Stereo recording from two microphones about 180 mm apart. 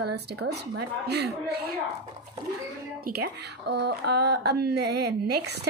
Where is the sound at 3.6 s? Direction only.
65° right (ahead or behind).